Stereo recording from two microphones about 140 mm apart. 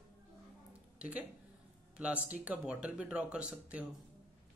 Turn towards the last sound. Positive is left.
turn(degrees=-10)  # may be behind; listen again after turning